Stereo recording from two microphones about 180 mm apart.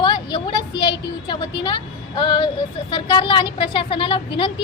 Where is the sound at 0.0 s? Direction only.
25° left (ahead or behind).